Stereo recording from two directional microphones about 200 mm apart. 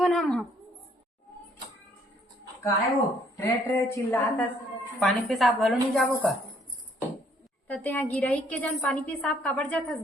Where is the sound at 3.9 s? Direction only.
10° left (ahead or behind).